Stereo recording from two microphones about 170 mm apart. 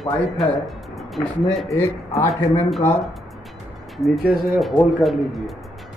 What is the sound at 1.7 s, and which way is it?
Speech, 20° left (ahead or behind).